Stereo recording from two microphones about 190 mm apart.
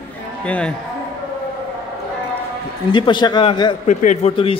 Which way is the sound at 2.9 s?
25° left (ahead or behind).